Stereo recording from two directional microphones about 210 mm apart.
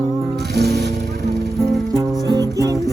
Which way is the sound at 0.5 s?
50° right (ahead or behind).